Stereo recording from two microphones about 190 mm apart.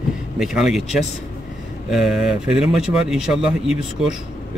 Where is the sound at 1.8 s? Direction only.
Centre (ahead or behind).